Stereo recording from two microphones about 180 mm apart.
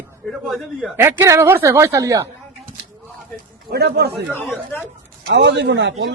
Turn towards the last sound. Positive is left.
turn(degrees=-85)